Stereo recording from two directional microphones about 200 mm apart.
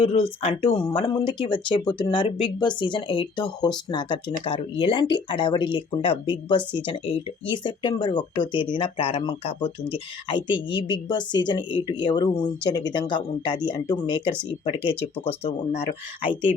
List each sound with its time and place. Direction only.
0.0 s speech: 30° left (ahead or behind)